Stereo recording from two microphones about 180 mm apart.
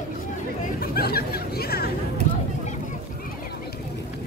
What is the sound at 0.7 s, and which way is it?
Speech, 60° left (ahead or behind).